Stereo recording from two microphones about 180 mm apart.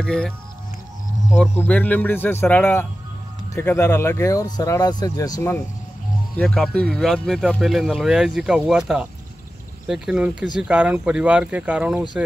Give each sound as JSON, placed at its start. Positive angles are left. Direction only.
{"t": 0.0, "sound": "speech", "side_deg": 5}
{"t": 1.5, "sound": "speech", "side_deg": 10}
{"t": 6.3, "sound": "speech", "side_deg": 0}